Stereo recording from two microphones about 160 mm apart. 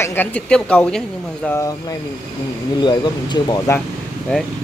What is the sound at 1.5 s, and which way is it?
Speech, 20° left (ahead or behind).